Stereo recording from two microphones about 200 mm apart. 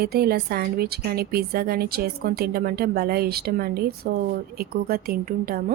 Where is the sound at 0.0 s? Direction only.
50° right (ahead or behind).